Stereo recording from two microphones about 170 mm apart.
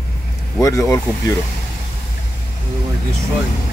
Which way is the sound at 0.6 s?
20° left (ahead or behind).